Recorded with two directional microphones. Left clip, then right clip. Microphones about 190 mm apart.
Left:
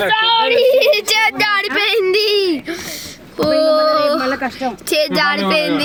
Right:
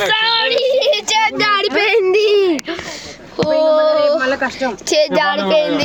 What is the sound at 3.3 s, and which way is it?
Child singing, 35° right (ahead or behind).